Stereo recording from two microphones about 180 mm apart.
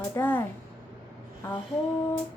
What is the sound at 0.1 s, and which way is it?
Speech, 10° left (ahead or behind).